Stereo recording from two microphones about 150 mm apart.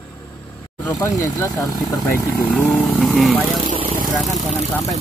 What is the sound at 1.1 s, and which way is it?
Speech, 20° left (ahead or behind).